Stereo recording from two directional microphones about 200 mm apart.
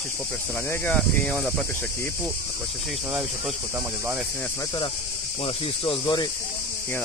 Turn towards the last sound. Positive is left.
turn(degrees=25)  # may be behind; listen again after turning